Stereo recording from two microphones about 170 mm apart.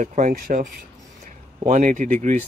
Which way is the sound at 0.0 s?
50° right (ahead or behind).